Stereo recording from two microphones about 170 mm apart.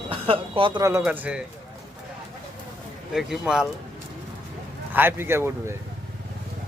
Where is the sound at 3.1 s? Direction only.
5° right (ahead or behind).